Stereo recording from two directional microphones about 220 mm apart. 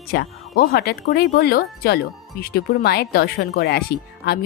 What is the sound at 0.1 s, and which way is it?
A woman's voice, 45° left (ahead or behind).